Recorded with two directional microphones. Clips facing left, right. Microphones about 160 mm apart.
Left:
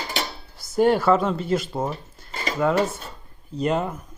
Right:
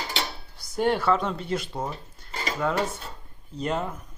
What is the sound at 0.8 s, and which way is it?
Speech, 5° left (ahead or behind).